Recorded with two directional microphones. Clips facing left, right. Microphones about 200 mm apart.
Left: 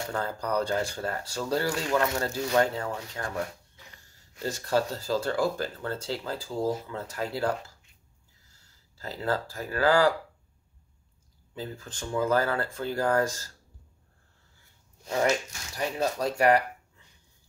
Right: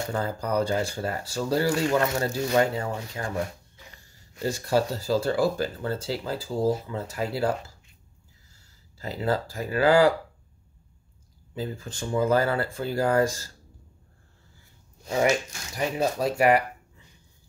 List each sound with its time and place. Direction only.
0.1 s speech: 10° right (ahead or behind)
8.9 s speech: 15° right (ahead or behind)
11.5 s speech: 10° right (ahead or behind)
15.0 s speech: 10° right (ahead or behind)